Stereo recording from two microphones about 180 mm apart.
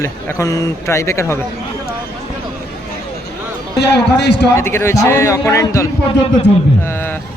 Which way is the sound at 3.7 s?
70° left (ahead or behind).